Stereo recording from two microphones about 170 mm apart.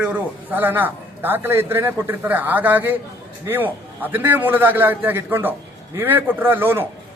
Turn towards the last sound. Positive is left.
turn(degrees=-15)  # may be behind; listen again after turning